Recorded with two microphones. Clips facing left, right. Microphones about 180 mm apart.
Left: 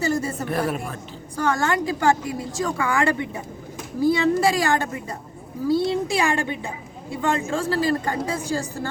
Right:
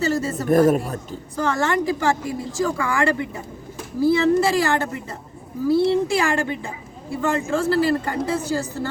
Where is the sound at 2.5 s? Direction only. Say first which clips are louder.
Right 2 dB; 20° left (ahead or behind).